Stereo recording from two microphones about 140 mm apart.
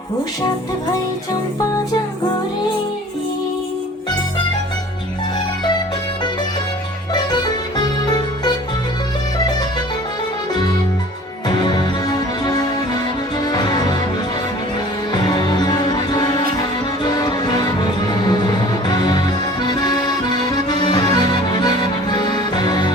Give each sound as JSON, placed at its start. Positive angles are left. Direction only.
{"t": 7.1, "sound": "music", "side_deg": 30}
{"t": 11.4, "sound": "music", "side_deg": 30}
{"t": 15.1, "sound": "music", "side_deg": 30}
{"t": 19.6, "sound": "accordion", "side_deg": 30}